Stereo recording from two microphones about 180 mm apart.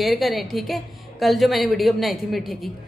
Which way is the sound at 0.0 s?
Centre (ahead or behind).